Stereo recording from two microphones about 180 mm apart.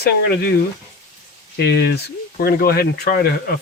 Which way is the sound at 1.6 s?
65° left (ahead or behind).